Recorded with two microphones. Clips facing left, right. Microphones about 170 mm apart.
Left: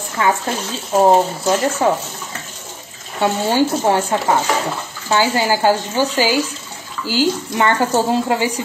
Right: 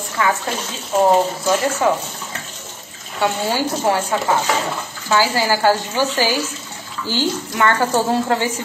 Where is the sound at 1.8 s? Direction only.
35° left (ahead or behind).